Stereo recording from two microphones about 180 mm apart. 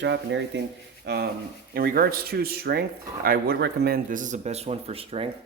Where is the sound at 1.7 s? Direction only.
55° right (ahead or behind); by 5.2 s 35° right (ahead or behind).